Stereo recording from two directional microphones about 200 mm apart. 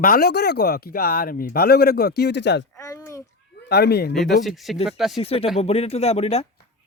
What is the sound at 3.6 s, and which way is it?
Speech, 55° left (ahead or behind).